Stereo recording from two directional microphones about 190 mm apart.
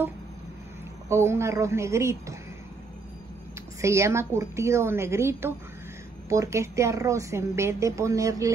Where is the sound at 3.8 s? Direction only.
15° right (ahead or behind).